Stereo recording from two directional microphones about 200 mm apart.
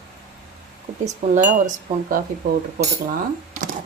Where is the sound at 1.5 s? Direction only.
40° right (ahead or behind).